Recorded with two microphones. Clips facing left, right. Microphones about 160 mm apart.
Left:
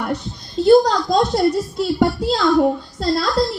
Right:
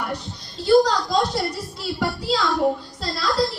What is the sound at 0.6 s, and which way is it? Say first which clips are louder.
A woman's voice: left 4 dB; 50° left (ahead or behind).